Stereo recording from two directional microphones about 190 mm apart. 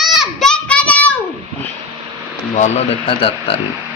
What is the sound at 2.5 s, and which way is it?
Speech, 35° left (ahead or behind).